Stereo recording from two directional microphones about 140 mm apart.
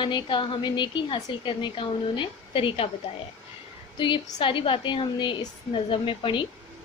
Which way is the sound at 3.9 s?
35° left (ahead or behind).